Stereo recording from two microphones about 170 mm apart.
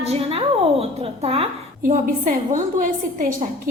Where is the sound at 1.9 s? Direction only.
50° right (ahead or behind).